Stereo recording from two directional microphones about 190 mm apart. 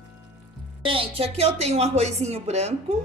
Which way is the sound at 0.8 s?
30° right (ahead or behind).